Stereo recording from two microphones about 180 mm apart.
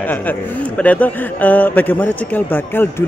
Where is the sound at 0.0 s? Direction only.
10° left (ahead or behind).